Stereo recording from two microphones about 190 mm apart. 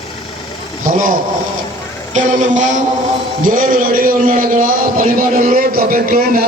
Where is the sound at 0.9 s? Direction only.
45° right (ahead or behind).